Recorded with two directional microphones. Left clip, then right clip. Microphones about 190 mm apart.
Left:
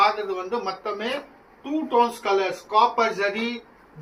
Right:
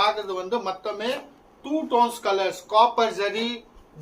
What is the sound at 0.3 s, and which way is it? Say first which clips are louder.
Speech: right 1 dB; 50° right (ahead or behind).